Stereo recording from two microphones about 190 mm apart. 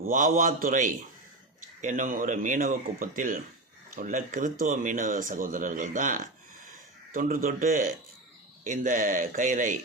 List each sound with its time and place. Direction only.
0.1 s speech: 45° right (ahead or behind)